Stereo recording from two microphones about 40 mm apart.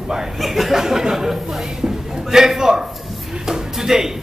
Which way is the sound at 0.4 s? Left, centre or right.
Centre.